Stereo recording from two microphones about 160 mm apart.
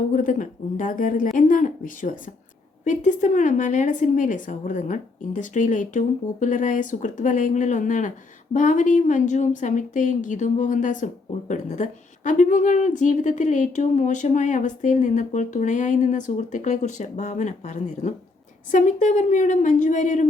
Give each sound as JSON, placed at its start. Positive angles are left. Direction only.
{"t": 0.1, "sound": "speech", "side_deg": 55}
{"t": 1.4, "sound": "a sound", "side_deg": 55}
{"t": 2.8, "sound": "a woman's voice", "side_deg": 50}